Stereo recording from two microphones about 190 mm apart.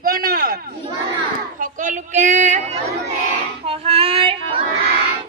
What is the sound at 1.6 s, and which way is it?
Speech, 40° right (ahead or behind).